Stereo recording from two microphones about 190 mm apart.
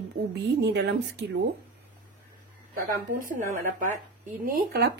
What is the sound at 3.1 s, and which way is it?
Speech, 45° right (ahead or behind).